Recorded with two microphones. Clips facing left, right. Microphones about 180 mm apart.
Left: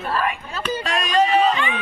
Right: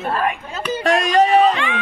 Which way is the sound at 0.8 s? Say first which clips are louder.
Right 5 dB; 80° right.